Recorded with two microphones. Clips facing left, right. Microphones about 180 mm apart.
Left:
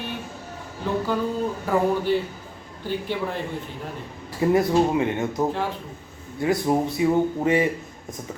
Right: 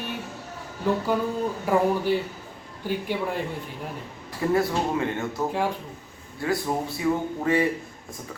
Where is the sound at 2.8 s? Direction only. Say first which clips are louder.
Even; 10° right (ahead or behind).